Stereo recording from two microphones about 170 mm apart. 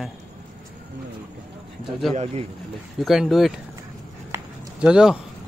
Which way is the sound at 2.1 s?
40° right (ahead or behind).